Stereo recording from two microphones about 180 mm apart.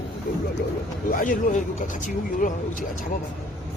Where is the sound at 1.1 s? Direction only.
45° left (ahead or behind).